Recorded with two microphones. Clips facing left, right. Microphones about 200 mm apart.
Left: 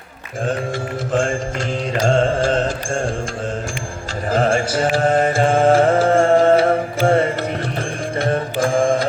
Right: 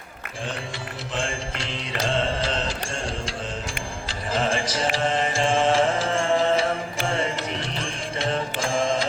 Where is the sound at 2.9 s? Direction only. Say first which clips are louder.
Left 8 dB; 45° left (ahead or behind).